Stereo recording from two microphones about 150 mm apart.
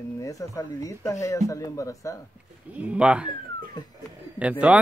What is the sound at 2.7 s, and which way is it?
Speech, 10° right (ahead or behind).